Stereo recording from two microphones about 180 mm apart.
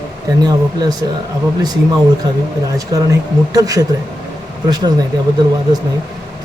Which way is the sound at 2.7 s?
20° right (ahead or behind).